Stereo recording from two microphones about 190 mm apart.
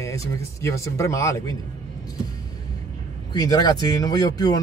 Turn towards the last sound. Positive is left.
turn(degrees=20)  # may be behind; listen again after turning